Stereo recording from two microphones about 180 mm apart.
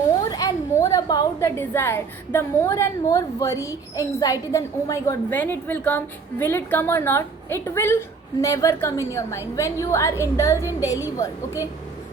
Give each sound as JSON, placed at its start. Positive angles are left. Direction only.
{"t": 0.3, "sound": "a woman's voice", "side_deg": 20}